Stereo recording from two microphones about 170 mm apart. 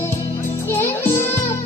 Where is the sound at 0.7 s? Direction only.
15° left (ahead or behind).